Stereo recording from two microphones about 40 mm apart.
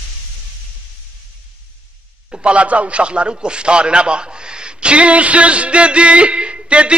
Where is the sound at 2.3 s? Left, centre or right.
Right.